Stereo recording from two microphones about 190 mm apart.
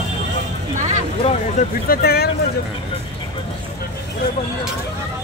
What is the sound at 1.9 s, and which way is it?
Speech, 55° left (ahead or behind).